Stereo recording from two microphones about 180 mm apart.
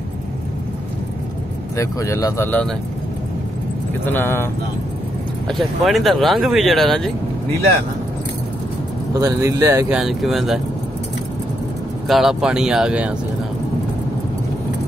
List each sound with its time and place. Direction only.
1.8 s speech: 20° left (ahead or behind)
4.0 s speech: 10° left (ahead or behind)
5.5 s speech: centre (ahead or behind)
9.2 s speech: 20° right (ahead or behind)
9.8 s speech: centre (ahead or behind)
12.1 s speech: centre (ahead or behind)